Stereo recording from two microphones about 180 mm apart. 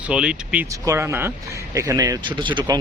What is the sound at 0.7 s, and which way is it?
Speech, 15° right (ahead or behind).